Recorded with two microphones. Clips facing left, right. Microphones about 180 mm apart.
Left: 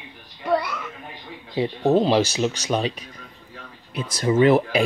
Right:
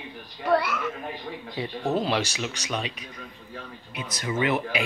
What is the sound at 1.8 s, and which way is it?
Speech, 35° left (ahead or behind).